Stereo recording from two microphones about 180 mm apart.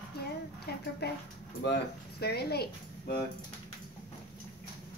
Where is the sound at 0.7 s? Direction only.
60° left (ahead or behind).